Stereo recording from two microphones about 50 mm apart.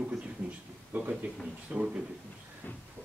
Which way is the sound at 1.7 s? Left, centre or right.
Right.